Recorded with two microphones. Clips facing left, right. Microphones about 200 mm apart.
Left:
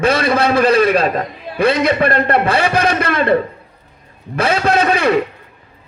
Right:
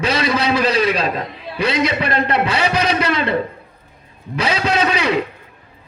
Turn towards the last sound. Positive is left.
turn(degrees=50)  # may be behind; listen again after turning